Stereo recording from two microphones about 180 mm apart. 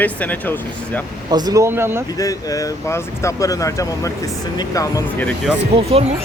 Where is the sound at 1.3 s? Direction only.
20° right (ahead or behind).